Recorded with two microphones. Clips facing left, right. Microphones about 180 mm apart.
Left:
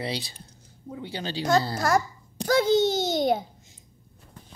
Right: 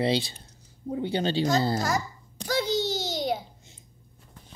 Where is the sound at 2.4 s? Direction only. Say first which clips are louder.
Left 6 dB; 50° left (ahead or behind).